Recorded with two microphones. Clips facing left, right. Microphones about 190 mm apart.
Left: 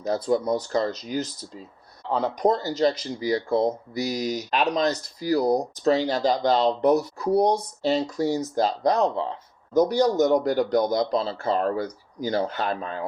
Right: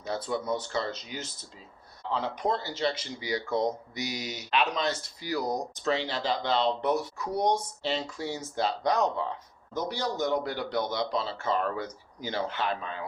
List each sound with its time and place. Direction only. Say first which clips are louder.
0.0 s speech: left 8 dB; 40° left (ahead or behind)
9.7 s speech: left 12 dB; 40° left (ahead or behind)